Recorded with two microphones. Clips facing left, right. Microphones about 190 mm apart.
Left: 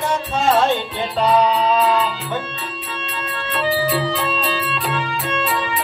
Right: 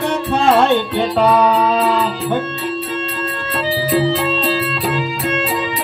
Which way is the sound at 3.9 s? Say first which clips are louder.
Right 5 dB; 40° right (ahead or behind).